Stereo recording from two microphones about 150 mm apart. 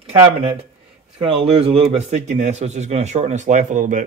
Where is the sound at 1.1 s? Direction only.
40° right (ahead or behind); by 4.0 s 60° right (ahead or behind).